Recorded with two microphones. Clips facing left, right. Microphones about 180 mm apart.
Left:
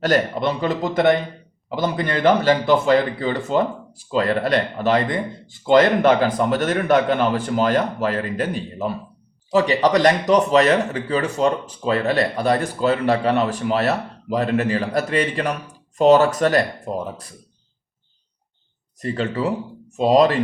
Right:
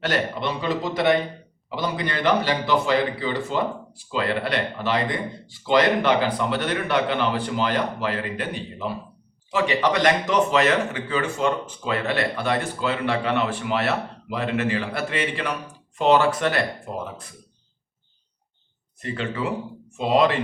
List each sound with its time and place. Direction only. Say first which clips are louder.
0.0 s a man's voice: left 6 dB; 45° left (ahead or behind)
18.9 s speech: left 5 dB; 40° left (ahead or behind)